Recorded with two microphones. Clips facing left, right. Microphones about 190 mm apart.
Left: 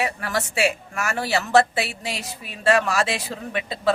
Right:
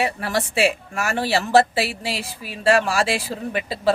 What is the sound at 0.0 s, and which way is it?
Speech, 30° right (ahead or behind).